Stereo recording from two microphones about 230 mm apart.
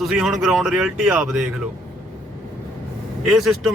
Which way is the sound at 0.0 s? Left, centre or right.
Centre.